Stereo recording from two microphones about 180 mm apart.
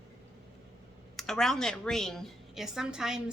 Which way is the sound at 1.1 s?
Centre (ahead or behind).